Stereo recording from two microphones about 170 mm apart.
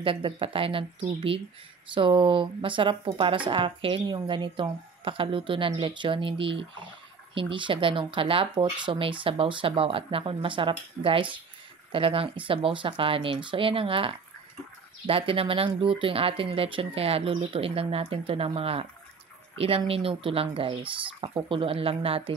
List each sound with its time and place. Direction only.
0.0 s speech: 30° right (ahead or behind)
2.0 s speech: 30° right (ahead or behind)